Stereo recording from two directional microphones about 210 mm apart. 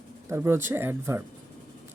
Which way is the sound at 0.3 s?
10° right (ahead or behind).